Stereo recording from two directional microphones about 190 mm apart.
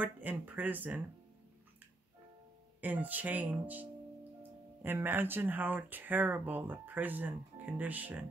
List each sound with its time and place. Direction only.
0.0 s speech: 10° right (ahead or behind)
2.8 s speech: 10° right (ahead or behind)